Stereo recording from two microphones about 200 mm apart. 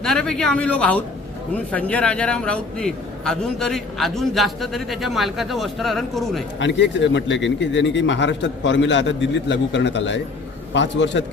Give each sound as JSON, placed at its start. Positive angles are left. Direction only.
{"t": 0.0, "sound": "a man's voice", "side_deg": 0}
{"t": 6.6, "sound": "speech", "side_deg": 60}